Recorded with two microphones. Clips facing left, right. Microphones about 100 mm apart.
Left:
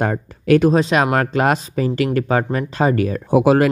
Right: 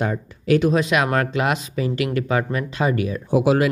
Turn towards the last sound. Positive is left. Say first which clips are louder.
# left 4 dB
turn(degrees=50)  # may be behind; listen again after turning